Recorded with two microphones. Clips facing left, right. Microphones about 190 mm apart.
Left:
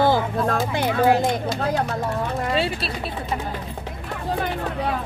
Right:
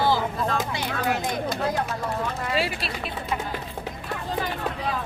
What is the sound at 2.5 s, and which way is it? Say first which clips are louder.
Speech: left 3 dB; 30° left (ahead or behind).